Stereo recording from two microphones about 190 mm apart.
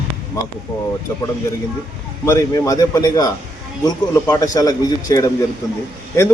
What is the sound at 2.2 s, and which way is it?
A man's voice, 15° left (ahead or behind).